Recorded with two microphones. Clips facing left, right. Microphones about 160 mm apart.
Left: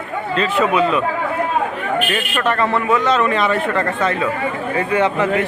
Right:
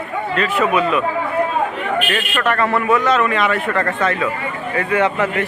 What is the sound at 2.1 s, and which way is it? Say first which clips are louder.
Speech: even; 20° left (ahead or behind).